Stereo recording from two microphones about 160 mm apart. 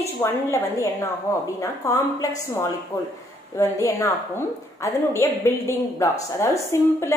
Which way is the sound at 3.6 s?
20° left (ahead or behind).